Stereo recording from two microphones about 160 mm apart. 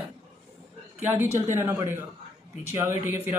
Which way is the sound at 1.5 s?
20° right (ahead or behind).